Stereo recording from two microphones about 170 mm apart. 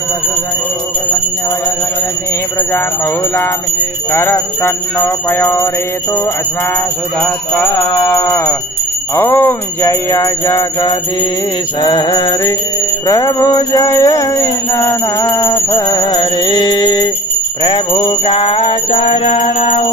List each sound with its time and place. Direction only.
4.1 s music: 10° left (ahead or behind)
7.7 s music: 10° left (ahead or behind); by 19.9 s 35° left (ahead or behind)